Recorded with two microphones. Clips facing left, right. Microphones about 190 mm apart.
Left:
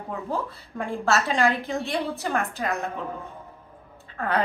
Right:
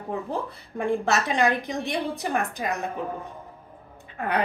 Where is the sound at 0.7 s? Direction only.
15° right (ahead or behind).